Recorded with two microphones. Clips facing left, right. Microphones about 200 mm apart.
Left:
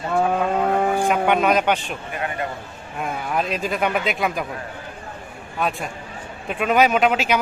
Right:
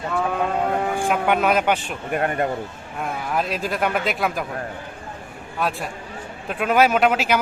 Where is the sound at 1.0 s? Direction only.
5° right (ahead or behind).